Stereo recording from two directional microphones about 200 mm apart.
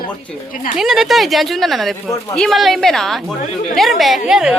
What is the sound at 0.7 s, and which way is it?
Speech, centre (ahead or behind).